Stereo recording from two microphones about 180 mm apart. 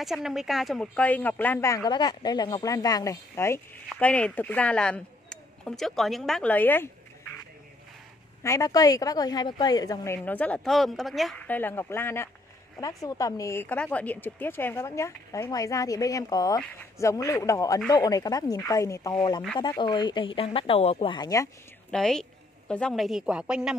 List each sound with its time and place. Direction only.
0.0 s speech: centre (ahead or behind)
8.4 s speech: 15° left (ahead or behind)
21.9 s speech: 5° left (ahead or behind)